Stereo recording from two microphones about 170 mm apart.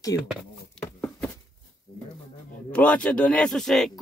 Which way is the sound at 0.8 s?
15° left (ahead or behind).